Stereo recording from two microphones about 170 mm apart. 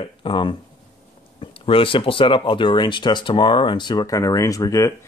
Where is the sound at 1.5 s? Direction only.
30° left (ahead or behind).